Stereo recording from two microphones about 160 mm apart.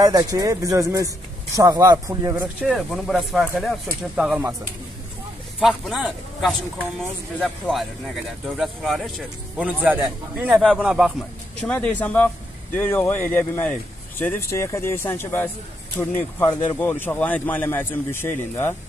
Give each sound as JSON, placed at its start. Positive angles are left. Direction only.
{"t": 0.0, "sound": "speech", "side_deg": -25}
{"t": 5.6, "sound": "a man's voice", "side_deg": -5}
{"t": 11.6, "sound": "speech", "side_deg": 5}